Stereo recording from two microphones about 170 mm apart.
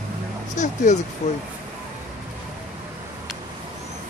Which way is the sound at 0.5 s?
45° left (ahead or behind).